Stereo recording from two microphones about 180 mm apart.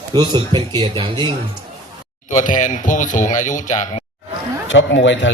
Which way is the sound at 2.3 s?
45° left (ahead or behind).